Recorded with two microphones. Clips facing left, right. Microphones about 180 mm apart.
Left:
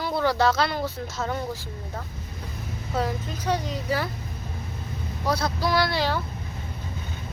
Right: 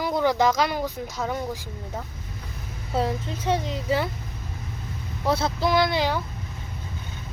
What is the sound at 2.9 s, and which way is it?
A woman's voice, 25° right (ahead or behind).